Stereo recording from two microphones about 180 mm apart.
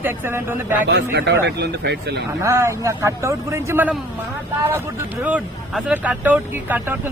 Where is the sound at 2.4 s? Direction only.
15° right (ahead or behind).